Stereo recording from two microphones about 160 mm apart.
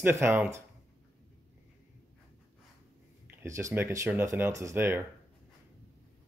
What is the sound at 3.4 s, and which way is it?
Speech, 20° right (ahead or behind).